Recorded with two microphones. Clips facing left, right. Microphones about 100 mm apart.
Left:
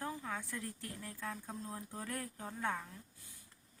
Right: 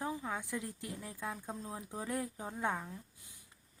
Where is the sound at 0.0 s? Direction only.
15° right (ahead or behind).